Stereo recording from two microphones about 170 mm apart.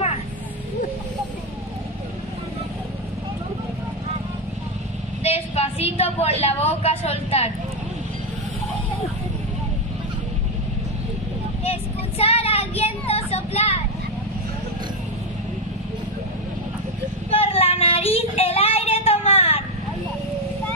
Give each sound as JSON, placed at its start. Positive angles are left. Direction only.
{"t": 5.2, "sound": "a sound", "side_deg": 35}
{"t": 6.4, "sound": "a woman's voice", "side_deg": 35}
{"t": 11.6, "sound": "child singing", "side_deg": 35}
{"t": 17.3, "sound": "child singing", "side_deg": 35}